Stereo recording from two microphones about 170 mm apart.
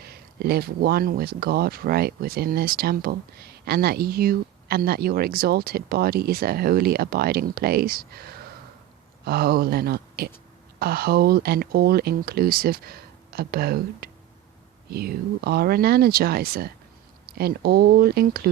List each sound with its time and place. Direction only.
0.0 s speech: 70° right (ahead or behind)